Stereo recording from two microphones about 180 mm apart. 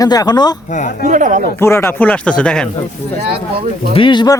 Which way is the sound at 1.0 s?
45° right (ahead or behind).